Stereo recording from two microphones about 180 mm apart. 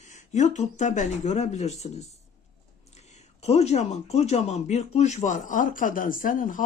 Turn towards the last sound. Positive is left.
turn(degrees=50)  # may be behind; listen again after turning